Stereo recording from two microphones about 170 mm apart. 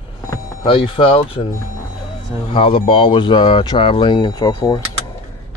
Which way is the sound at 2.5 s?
30° left (ahead or behind).